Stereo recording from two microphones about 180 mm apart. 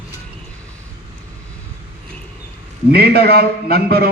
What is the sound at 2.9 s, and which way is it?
A man's voice, 60° right (ahead or behind).